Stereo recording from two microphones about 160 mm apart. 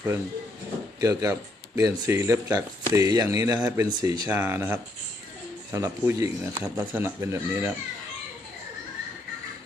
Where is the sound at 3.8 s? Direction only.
25° right (ahead or behind).